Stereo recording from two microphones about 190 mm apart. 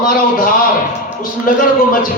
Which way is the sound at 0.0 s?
50° left (ahead or behind).